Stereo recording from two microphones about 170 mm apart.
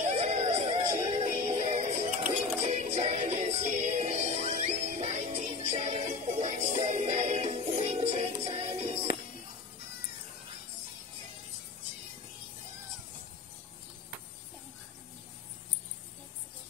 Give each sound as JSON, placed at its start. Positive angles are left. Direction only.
{"t": 0.0, "sound": "music", "side_deg": -40}